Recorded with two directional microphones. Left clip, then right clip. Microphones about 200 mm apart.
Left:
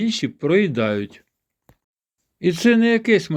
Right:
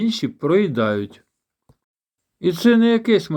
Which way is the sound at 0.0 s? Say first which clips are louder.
Even; 25° left (ahead or behind).